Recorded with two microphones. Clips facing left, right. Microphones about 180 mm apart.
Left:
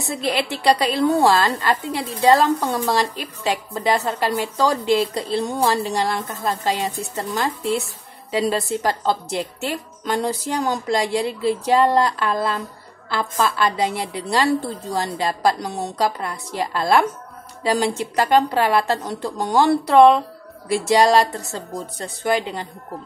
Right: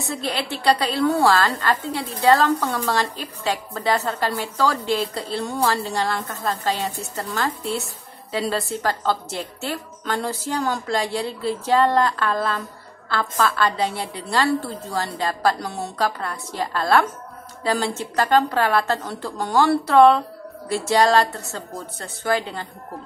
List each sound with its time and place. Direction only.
0.1 s a woman's voice: 15° left (ahead or behind)